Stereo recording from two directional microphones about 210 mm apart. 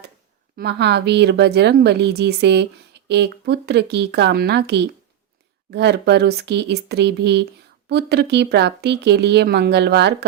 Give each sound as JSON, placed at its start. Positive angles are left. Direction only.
{"t": 0.5, "sound": "speech", "side_deg": -50}